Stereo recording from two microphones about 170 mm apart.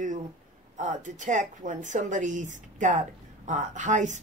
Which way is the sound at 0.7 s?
50° right (ahead or behind).